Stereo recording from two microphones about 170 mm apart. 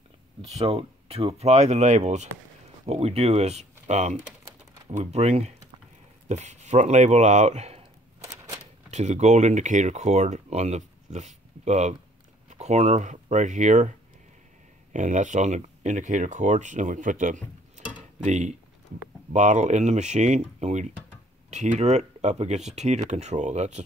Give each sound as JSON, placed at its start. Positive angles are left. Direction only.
{"t": 0.6, "sound": "speech", "side_deg": -35}
{"t": 8.9, "sound": "speech", "side_deg": -40}